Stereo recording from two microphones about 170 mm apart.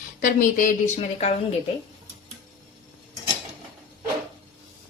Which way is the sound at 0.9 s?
40° left (ahead or behind).